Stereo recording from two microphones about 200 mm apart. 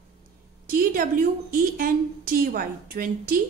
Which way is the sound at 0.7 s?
45° right (ahead or behind).